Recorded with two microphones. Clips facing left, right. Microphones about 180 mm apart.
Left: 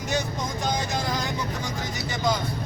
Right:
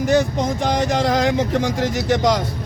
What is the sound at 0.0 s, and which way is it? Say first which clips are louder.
Speech: right 11 dB; 65° right (ahead or behind).